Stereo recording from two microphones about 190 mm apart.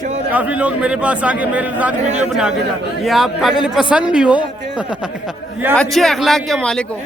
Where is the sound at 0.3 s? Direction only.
5° right (ahead or behind).